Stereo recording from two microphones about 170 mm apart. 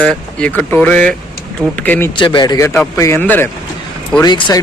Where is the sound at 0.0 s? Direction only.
5° left (ahead or behind).